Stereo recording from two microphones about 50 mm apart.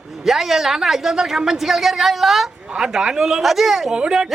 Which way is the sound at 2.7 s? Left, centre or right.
Centre.